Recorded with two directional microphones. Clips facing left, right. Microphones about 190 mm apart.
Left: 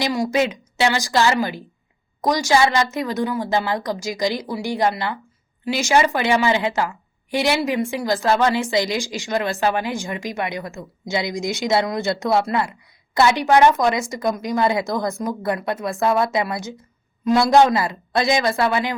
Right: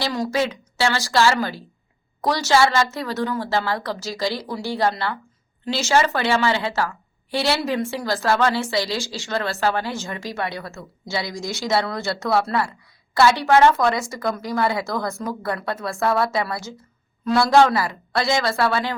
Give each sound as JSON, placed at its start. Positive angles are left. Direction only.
{"t": 0.0, "sound": "a woman's voice", "side_deg": 15}